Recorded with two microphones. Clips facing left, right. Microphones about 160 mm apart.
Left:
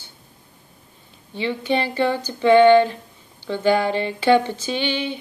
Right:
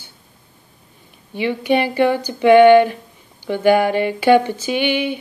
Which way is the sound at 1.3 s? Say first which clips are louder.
Right 4 dB; 15° right (ahead or behind).